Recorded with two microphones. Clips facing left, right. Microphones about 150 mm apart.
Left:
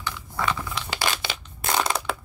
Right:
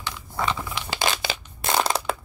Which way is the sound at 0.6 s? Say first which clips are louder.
Even; 15° right (ahead or behind).